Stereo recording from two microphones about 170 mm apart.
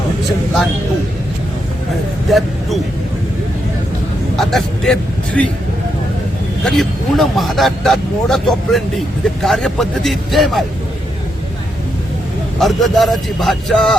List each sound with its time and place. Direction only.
2.3 s speech: centre (ahead or behind)
4.4 s a man's voice: centre (ahead or behind)
6.7 s speech: centre (ahead or behind)
12.5 s speech: centre (ahead or behind)